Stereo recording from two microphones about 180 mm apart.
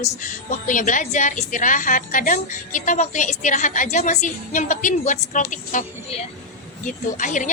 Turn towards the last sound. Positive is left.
turn(degrees=45)  # may be behind; listen again after turning